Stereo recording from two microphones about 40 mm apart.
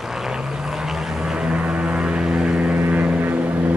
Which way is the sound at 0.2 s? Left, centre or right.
Centre.